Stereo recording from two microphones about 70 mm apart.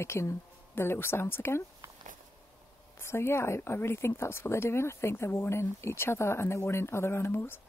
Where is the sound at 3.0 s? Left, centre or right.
Left.